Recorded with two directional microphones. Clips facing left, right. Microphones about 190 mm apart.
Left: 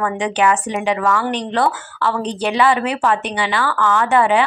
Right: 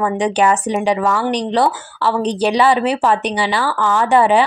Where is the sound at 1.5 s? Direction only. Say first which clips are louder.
Right 2 dB; 15° right (ahead or behind).